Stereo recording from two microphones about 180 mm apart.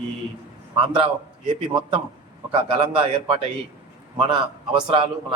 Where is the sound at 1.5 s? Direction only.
30° right (ahead or behind).